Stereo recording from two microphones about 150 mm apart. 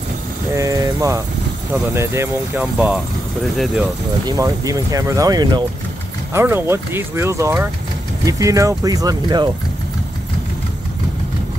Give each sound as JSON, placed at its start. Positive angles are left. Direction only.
{"t": 0.6, "sound": "speech", "side_deg": -25}
{"t": 3.5, "sound": "speech", "side_deg": 0}
{"t": 4.3, "sound": "speech", "side_deg": -20}
{"t": 6.3, "sound": "speech", "side_deg": -15}